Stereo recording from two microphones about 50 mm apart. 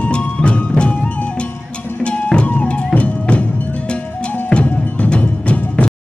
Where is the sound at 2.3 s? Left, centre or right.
Left.